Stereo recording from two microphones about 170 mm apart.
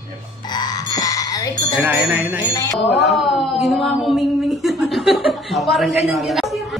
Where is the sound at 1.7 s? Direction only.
10° right (ahead or behind).